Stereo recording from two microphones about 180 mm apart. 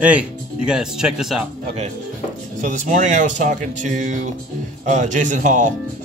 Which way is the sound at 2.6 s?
45° right (ahead or behind).